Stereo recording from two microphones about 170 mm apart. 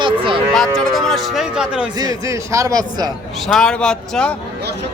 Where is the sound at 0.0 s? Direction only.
30° right (ahead or behind).